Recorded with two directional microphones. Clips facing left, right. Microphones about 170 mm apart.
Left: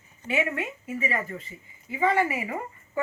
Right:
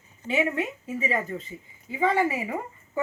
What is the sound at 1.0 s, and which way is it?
Speech, 20° right (ahead or behind).